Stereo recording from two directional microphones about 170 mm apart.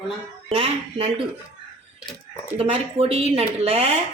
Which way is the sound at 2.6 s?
35° right (ahead or behind).